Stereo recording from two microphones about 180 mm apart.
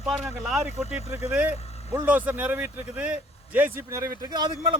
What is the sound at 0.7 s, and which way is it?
Speech, 35° left (ahead or behind).